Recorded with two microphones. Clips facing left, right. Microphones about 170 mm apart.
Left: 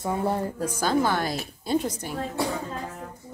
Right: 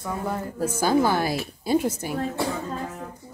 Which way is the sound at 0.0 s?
25° left (ahead or behind).